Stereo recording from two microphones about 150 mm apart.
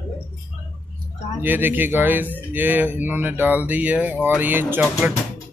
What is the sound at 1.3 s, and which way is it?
Speech, 15° right (ahead or behind).